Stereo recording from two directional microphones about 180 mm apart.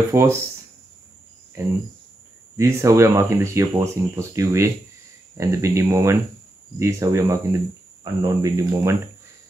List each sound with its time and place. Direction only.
0.1 s speech: 15° right (ahead or behind)
1.6 s speech: 15° right (ahead or behind)